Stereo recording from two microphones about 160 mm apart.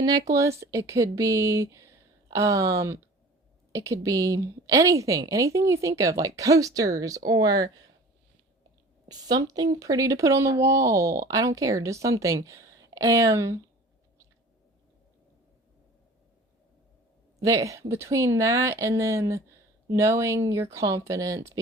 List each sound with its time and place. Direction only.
0.0 s a woman's voice: 25° right (ahead or behind)
9.0 s a woman's voice: 25° right (ahead or behind)
17.4 s a woman's voice: 20° right (ahead or behind)